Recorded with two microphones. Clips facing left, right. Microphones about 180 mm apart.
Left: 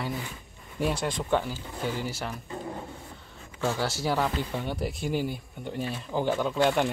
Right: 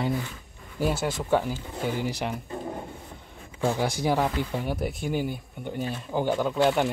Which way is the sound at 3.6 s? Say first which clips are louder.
Right 3 dB; 15° right (ahead or behind).